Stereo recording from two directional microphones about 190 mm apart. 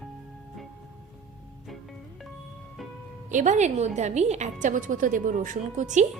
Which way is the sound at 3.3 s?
40° right (ahead or behind).